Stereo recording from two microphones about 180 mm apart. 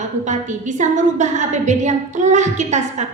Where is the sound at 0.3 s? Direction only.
45° right (ahead or behind).